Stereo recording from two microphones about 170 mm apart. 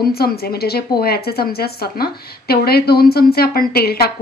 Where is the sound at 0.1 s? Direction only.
65° left (ahead or behind).